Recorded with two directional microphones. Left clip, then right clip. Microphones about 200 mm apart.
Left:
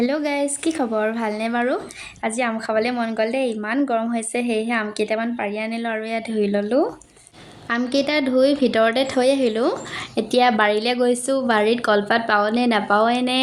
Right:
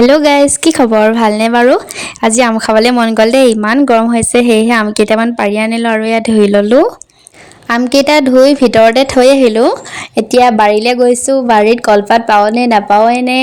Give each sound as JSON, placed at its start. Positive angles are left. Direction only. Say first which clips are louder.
{"t": 0.0, "sound": "a woman's voice", "louder": "right 15 dB", "side_deg": -50}